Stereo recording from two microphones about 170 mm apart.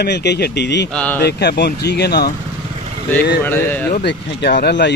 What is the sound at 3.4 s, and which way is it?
Speech, 10° left (ahead or behind).